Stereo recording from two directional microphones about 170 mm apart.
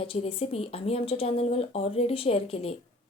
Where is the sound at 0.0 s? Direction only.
35° left (ahead or behind).